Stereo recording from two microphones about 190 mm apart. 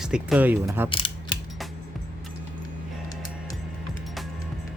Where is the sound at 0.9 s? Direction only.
25° left (ahead or behind).